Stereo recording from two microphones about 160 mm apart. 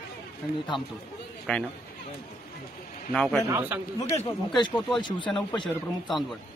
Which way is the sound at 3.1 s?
5° left (ahead or behind).